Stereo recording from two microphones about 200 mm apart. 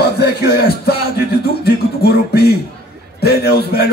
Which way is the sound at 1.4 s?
50° left (ahead or behind).